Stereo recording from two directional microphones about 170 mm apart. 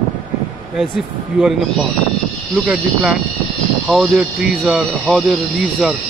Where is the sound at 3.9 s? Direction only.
Centre (ahead or behind).